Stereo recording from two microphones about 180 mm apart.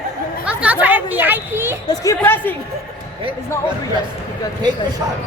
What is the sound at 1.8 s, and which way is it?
Speech, 15° left (ahead or behind).